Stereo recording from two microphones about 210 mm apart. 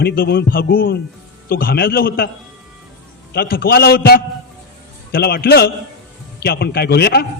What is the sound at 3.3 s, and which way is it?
A man's voice, 45° left (ahead or behind).